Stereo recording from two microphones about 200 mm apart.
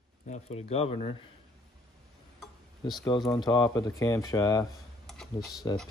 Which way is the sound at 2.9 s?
20° left (ahead or behind).